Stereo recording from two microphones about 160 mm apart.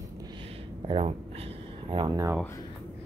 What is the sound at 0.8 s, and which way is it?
Speech, 35° right (ahead or behind).